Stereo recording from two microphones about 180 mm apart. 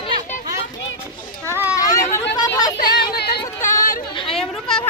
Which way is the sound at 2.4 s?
20° left (ahead or behind).